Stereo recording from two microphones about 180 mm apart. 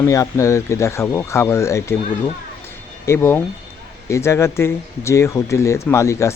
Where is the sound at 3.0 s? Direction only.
15° left (ahead or behind).